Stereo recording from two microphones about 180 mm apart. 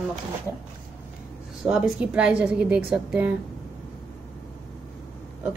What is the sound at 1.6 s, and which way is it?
A woman's voice, 5° right (ahead or behind).